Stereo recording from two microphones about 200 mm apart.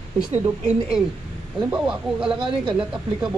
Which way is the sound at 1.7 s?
5° right (ahead or behind).